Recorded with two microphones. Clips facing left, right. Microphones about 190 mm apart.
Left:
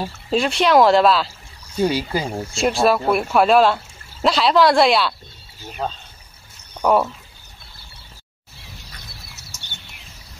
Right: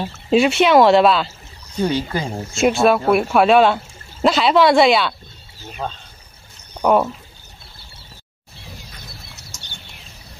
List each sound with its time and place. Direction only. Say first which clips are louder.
0.3 s speech: right 3 dB; 5° right (ahead or behind)
1.8 s speech: even; 10° left (ahead or behind)
2.5 s speech: right 3 dB; centre (ahead or behind)
6.7 s speech: right 1 dB; 10° right (ahead or behind)